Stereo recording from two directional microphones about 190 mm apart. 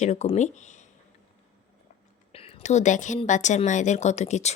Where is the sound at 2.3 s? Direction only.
30° left (ahead or behind).